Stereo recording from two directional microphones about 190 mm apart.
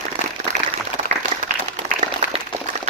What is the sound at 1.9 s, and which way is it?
Applause, 40° right (ahead or behind).